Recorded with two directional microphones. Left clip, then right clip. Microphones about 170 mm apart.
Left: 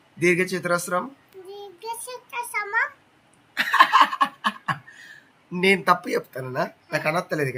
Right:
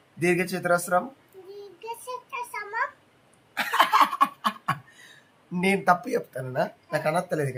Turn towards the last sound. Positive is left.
turn(degrees=-15)  # may be behind; listen again after turning